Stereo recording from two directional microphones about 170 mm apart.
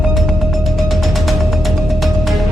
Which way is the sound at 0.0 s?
Centre (ahead or behind).